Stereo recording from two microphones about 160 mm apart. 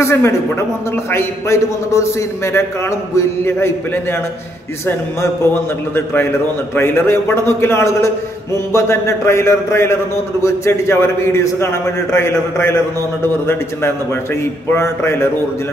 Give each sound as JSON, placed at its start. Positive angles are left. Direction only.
{"t": 0.0, "sound": "a man's voice", "side_deg": 15}